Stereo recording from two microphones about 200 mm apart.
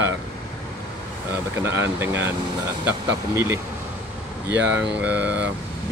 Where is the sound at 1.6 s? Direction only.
10° right (ahead or behind).